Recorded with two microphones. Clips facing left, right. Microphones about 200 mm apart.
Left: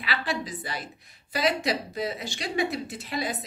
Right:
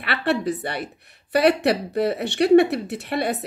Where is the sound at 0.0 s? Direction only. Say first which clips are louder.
Right 8 dB; 65° right (ahead or behind).